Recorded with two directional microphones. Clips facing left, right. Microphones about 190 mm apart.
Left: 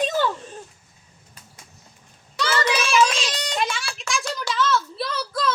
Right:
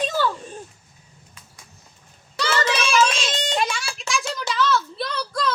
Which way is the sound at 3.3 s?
25° right (ahead or behind).